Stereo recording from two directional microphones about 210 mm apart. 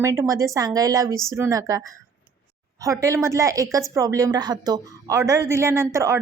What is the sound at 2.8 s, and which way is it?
A woman's voice, 15° right (ahead or behind).